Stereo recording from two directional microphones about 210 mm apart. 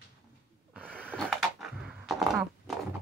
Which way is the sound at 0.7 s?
5° right (ahead or behind).